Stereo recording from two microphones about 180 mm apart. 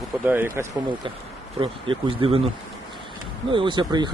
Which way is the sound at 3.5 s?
25° right (ahead or behind).